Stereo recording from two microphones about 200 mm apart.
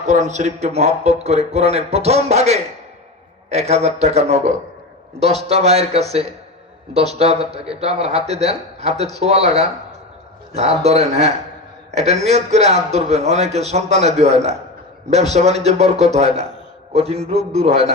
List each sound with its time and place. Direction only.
0.0 s a man's voice: 35° right (ahead or behind)